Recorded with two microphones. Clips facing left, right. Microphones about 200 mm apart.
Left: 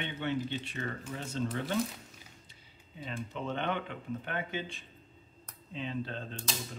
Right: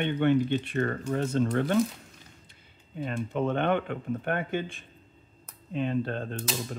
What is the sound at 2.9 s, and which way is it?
Speech, 55° right (ahead or behind).